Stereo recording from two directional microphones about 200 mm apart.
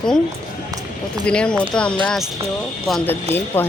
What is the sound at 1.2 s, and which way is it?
Speech, 5° left (ahead or behind).